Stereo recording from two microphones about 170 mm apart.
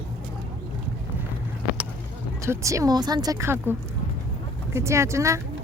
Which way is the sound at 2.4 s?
15° right (ahead or behind).